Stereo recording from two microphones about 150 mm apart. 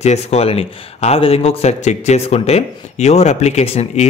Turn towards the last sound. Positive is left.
turn(degrees=45)  # may be behind; listen again after turning